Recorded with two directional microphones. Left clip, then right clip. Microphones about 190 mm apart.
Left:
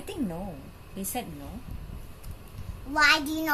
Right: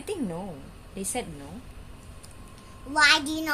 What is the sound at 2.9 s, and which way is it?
Child singing, 10° right (ahead or behind).